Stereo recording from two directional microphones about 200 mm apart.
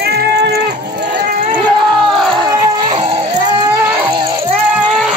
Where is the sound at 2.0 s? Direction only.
Centre (ahead or behind).